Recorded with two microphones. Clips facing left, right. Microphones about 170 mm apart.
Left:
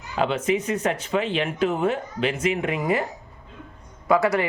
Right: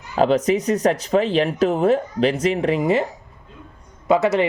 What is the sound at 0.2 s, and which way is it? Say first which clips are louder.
Speech: right 6 dB; 40° right (ahead or behind).